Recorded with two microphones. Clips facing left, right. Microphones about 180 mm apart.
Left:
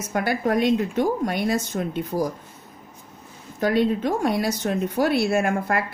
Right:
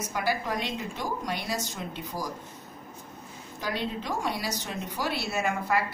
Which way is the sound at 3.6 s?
55° left (ahead or behind).